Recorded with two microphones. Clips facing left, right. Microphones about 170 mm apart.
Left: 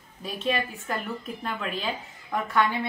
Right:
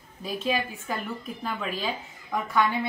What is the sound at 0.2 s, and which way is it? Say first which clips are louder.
Speech: even; 5° right (ahead or behind).